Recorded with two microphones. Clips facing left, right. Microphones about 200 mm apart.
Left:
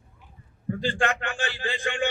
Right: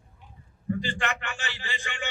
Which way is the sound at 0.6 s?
55° left (ahead or behind).